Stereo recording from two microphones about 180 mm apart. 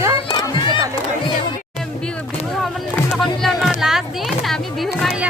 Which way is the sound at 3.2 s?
Centre (ahead or behind).